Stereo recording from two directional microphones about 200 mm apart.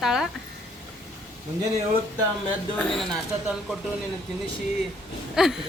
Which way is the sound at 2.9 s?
Centre (ahead or behind).